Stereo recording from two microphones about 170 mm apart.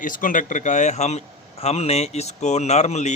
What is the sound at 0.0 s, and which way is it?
A man's voice, 50° left (ahead or behind).